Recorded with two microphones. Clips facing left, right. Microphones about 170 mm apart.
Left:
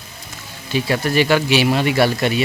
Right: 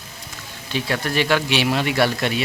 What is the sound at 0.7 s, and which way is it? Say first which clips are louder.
Speech: left 5 dB; 5° left (ahead or behind).